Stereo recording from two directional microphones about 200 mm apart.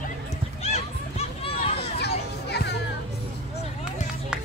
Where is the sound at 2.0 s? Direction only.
55° left (ahead or behind).